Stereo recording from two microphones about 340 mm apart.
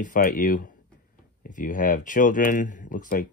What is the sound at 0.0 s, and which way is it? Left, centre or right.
Speech, left.